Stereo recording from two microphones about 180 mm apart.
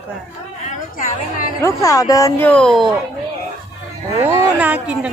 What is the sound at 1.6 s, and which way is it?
Speech, 20° left (ahead or behind).